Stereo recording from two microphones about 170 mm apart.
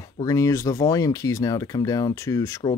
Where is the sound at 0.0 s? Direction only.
20° left (ahead or behind).